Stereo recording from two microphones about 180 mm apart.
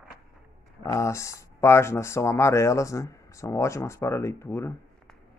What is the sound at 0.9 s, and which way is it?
Speech, 15° left (ahead or behind).